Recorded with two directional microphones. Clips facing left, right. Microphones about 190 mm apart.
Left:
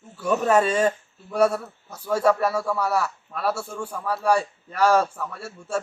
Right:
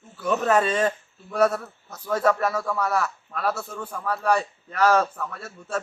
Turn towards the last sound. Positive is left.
turn(degrees=10)  # may be behind; listen again after turning